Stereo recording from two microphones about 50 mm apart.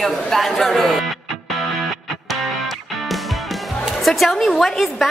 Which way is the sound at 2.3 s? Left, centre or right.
Centre.